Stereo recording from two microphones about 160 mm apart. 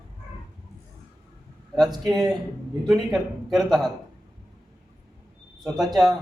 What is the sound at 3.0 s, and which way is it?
Speech, centre (ahead or behind).